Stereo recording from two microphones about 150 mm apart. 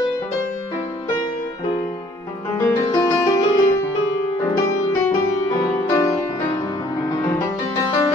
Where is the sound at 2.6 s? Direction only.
20° left (ahead or behind).